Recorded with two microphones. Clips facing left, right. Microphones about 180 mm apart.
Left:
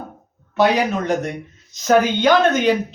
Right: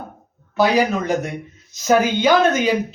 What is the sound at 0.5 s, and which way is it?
Speech, centre (ahead or behind).